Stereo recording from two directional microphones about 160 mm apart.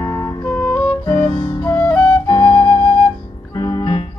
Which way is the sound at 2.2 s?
30° left (ahead or behind).